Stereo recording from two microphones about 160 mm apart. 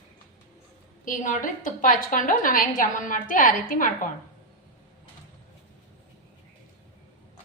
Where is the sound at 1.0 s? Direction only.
55° left (ahead or behind).